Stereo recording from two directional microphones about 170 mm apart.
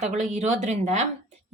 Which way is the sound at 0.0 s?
45° right (ahead or behind).